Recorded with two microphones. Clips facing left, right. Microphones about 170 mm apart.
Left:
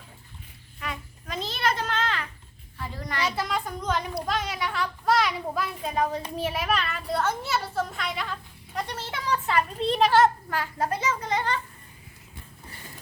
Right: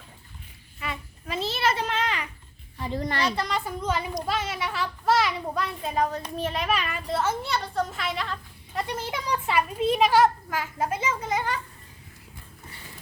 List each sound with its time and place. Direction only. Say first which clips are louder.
0.8 s a sound: right 1 dB; 5° right (ahead or behind)
2.7 s a woman's voice: right 5 dB; 20° right (ahead or behind)
3.2 s a child's voice: right 1 dB; 5° left (ahead or behind)
6.1 s a child's voice: left 1 dB; 10° left (ahead or behind)
6.7 s speech: even; 10° right (ahead or behind)
7.4 s a child's voice: even; 5° left (ahead or behind)
9.0 s speech: even; 15° right (ahead or behind)